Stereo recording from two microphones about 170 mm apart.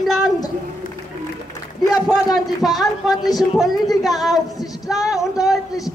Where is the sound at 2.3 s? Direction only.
Centre (ahead or behind).